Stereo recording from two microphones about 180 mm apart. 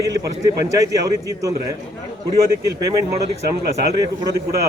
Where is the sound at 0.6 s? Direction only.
20° right (ahead or behind).